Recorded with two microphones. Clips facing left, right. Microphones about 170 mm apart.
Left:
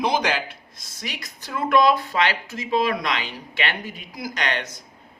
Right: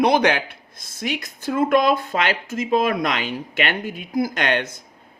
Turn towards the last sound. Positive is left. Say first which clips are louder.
# right 5 dB
turn(degrees=-55)  # may be behind; listen again after turning